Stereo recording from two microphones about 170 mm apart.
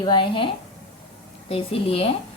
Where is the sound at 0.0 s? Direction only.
30° left (ahead or behind).